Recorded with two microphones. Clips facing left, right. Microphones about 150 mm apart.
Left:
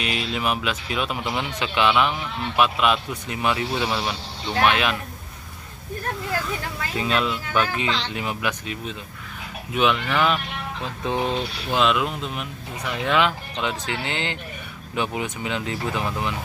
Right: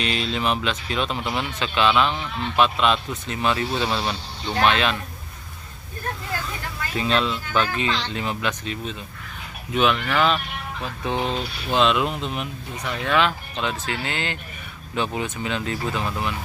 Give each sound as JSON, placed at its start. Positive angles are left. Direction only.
{"t": 0.0, "sound": "speech", "side_deg": 10}
{"t": 7.0, "sound": "speech", "side_deg": 10}
{"t": 13.0, "sound": "speech", "side_deg": 15}